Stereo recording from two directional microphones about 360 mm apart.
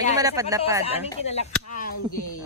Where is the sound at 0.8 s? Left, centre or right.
Centre.